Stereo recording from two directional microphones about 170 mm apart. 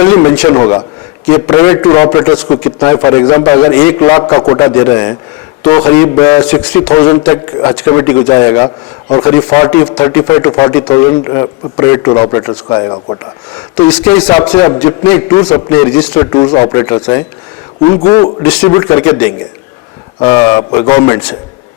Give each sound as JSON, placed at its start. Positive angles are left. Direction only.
{"t": 0.0, "sound": "a man's voice", "side_deg": 20}
{"t": 14.4, "sound": "a man's voice", "side_deg": 25}